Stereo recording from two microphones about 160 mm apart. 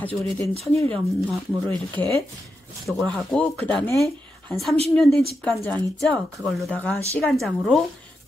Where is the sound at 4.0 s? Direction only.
Centre (ahead or behind).